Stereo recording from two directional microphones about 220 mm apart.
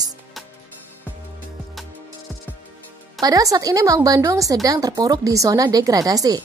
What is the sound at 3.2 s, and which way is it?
A woman's voice, 15° right (ahead or behind).